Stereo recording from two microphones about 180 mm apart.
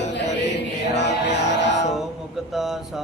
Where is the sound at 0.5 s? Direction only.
75° left (ahead or behind).